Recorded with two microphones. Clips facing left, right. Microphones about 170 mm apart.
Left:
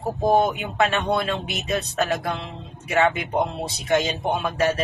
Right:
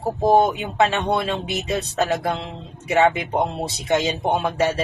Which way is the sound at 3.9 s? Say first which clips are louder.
Right 1 dB; 25° right (ahead or behind).